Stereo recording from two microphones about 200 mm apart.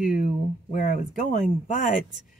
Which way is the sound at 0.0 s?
40° left (ahead or behind).